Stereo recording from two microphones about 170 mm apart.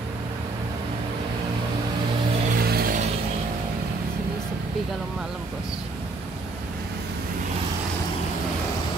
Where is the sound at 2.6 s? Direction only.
60° right (ahead or behind).